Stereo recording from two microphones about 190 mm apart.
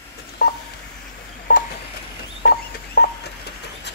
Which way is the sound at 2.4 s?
55° left (ahead or behind).